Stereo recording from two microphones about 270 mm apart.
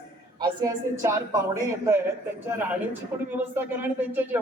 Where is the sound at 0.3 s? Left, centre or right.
Centre.